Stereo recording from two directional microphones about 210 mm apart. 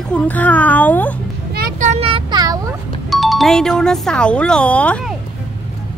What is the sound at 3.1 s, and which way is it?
Speech, centre (ahead or behind).